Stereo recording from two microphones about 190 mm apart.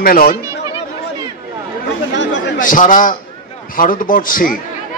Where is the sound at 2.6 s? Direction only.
45° left (ahead or behind).